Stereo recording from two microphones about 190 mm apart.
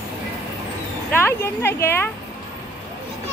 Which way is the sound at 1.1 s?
10° left (ahead or behind).